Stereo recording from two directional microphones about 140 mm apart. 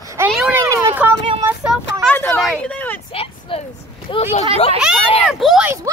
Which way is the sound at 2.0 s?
5° left (ahead or behind).